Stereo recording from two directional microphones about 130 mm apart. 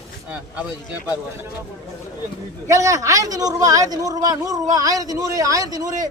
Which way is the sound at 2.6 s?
25° right (ahead or behind).